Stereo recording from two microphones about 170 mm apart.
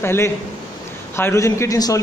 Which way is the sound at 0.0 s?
15° left (ahead or behind).